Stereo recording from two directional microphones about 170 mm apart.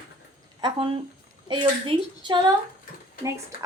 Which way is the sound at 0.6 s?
30° right (ahead or behind).